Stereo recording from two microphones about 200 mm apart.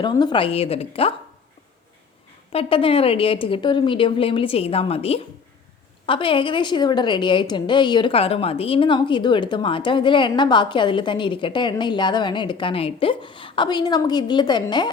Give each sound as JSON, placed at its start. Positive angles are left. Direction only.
{"t": 0.0, "sound": "a woman's voice", "side_deg": 20}
{"t": 2.5, "sound": "a woman's voice", "side_deg": 30}